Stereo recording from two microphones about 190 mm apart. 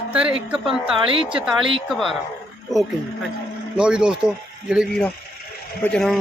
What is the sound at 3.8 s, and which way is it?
Speech, 5° right (ahead or behind).